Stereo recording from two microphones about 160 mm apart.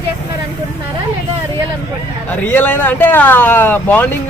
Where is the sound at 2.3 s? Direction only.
10° left (ahead or behind).